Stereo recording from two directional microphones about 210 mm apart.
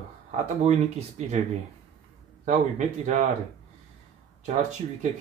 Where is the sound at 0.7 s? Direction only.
30° right (ahead or behind).